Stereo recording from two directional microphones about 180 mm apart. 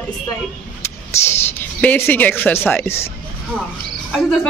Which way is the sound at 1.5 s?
10° left (ahead or behind).